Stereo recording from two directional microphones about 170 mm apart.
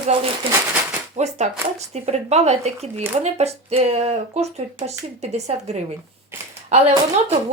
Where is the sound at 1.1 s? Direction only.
40° right (ahead or behind).